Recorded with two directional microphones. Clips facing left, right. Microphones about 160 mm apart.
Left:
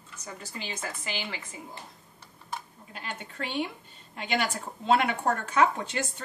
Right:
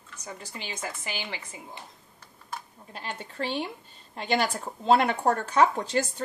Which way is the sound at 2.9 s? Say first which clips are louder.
Right 3 dB; 35° right (ahead or behind).